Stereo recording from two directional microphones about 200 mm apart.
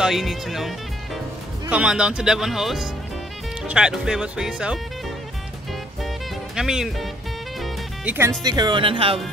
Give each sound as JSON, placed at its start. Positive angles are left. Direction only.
{"t": 0.0, "sound": "speech", "side_deg": 0}
{"t": 6.0, "sound": "music", "side_deg": -5}
{"t": 8.4, "sound": "speech", "side_deg": -20}